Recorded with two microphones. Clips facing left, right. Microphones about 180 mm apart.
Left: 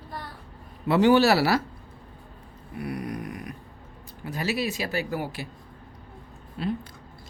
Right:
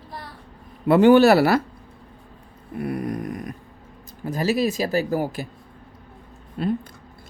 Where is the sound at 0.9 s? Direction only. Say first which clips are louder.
Right 6 dB; 55° right (ahead or behind).